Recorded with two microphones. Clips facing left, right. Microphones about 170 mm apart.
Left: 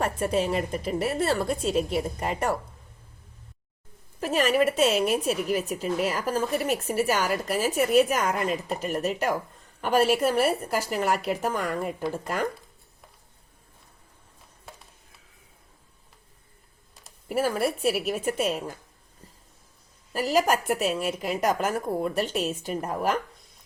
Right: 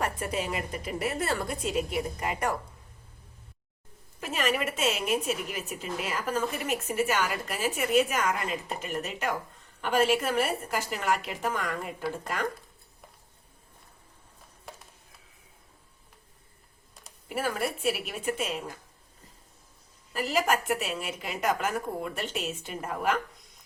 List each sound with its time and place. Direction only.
0.0 s a woman's voice: 30° left (ahead or behind)
4.2 s a woman's voice: 35° left (ahead or behind)
17.2 s a woman's voice: 40° left (ahead or behind)
20.1 s a woman's voice: 40° left (ahead or behind)